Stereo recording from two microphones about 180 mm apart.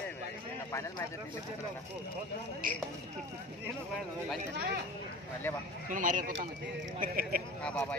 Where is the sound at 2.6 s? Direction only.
50° right (ahead or behind).